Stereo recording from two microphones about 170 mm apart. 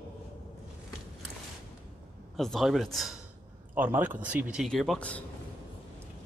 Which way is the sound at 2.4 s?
Centre (ahead or behind).